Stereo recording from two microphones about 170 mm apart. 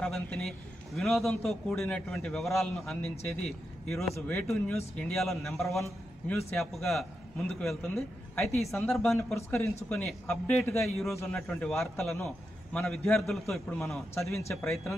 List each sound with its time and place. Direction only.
0.0 s a man's voice: 5° left (ahead or behind)
9.3 s a man's voice: 15° left (ahead or behind)
14.1 s a man's voice: 15° left (ahead or behind)
14.5 s a man's voice: centre (ahead or behind)